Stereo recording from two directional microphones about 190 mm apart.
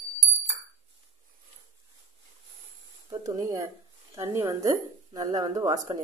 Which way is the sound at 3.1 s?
15° right (ahead or behind).